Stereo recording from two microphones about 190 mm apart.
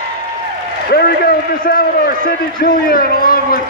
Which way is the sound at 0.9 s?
55° left (ahead or behind).